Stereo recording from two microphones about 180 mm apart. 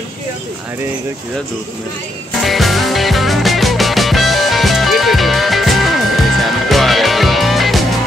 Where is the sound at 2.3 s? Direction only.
Centre (ahead or behind).